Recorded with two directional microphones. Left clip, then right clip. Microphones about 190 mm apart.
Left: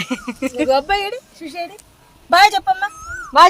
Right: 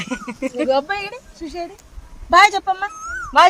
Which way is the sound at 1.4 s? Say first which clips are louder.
Left 1 dB; 50° left (ahead or behind).